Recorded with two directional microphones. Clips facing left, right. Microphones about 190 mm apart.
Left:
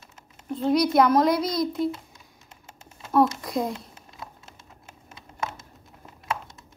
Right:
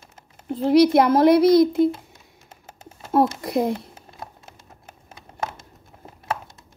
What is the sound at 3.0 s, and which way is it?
Speech, 30° right (ahead or behind).